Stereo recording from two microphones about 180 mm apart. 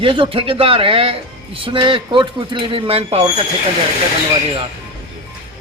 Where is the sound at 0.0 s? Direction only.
30° right (ahead or behind).